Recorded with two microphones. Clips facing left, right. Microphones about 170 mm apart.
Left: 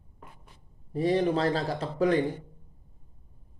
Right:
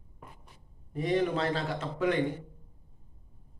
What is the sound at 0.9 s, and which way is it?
A man's voice, 35° left (ahead or behind).